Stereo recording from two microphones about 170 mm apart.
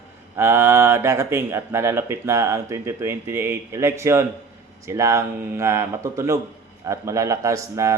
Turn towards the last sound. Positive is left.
turn(degrees=-20)  # may be behind; listen again after turning